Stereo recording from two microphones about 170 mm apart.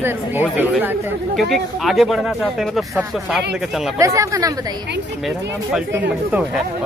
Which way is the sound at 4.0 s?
20° right (ahead or behind).